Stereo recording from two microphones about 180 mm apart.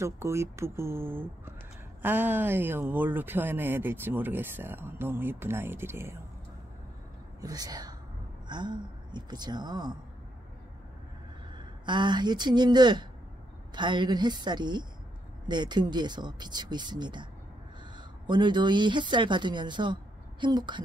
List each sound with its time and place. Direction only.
0.0 s speech: 15° right (ahead or behind)
7.4 s speech: 20° right (ahead or behind)
11.5 s speech: 25° right (ahead or behind)